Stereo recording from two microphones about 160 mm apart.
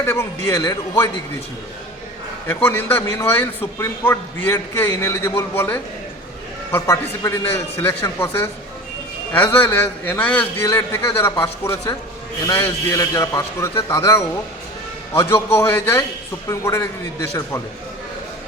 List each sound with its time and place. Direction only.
0.0 s a man's voice: 15° left (ahead or behind)
2.5 s a man's voice: 10° left (ahead or behind)